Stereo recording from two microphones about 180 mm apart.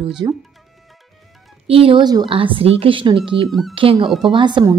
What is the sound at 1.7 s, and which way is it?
A woman's voice, 30° right (ahead or behind).